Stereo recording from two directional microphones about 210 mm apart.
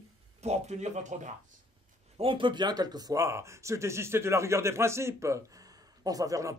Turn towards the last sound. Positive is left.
turn(degrees=-15)  # may be behind; listen again after turning